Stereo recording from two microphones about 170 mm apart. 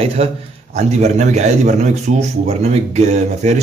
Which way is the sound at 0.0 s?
35° right (ahead or behind).